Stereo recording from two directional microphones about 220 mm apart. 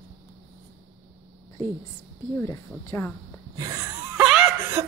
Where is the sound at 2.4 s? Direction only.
10° left (ahead or behind).